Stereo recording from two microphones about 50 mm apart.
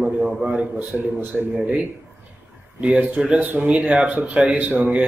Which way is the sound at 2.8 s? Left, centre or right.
Right.